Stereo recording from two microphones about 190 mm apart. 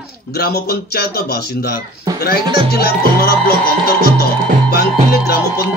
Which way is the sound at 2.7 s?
55° left (ahead or behind).